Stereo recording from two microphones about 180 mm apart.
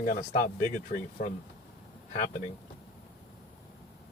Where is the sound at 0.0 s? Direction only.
50° left (ahead or behind).